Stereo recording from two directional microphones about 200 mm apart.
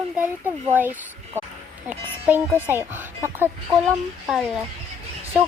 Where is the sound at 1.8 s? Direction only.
10° right (ahead or behind).